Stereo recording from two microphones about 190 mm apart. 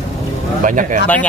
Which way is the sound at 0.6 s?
45° right (ahead or behind).